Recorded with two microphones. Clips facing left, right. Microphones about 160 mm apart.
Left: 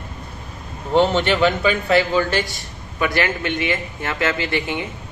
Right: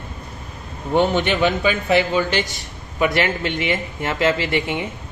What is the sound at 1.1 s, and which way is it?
Speech, 15° right (ahead or behind).